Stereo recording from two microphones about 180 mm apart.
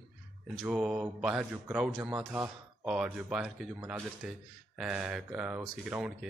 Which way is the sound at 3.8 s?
15° right (ahead or behind).